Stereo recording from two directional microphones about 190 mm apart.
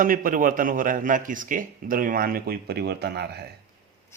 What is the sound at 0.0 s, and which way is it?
A man's voice, 45° right (ahead or behind).